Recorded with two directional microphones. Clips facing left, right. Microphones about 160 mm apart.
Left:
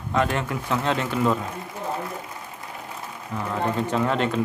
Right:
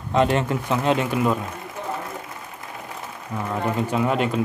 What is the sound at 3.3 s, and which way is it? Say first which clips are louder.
Speech: right 1 dB; 10° right (ahead or behind).